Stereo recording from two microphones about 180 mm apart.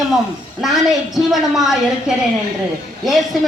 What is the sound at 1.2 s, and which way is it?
Speech, centre (ahead or behind).